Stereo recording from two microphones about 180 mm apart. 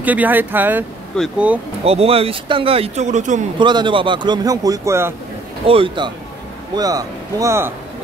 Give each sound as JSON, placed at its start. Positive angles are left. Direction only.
{"t": 0.0, "sound": "speech", "side_deg": -10}
{"t": 1.9, "sound": "speech", "side_deg": -35}
{"t": 3.5, "sound": "speech", "side_deg": -25}
{"t": 5.7, "sound": "speech", "side_deg": -30}